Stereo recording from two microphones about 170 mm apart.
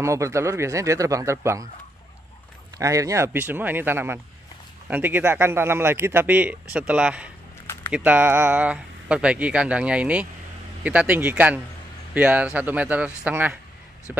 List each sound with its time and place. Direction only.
0.0 s speech: 15° right (ahead or behind)
2.8 s speech: 20° right (ahead or behind)